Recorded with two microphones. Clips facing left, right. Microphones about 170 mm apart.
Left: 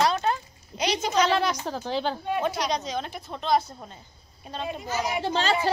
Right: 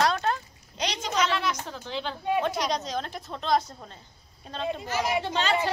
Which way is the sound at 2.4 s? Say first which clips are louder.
Left 2 dB; centre (ahead or behind).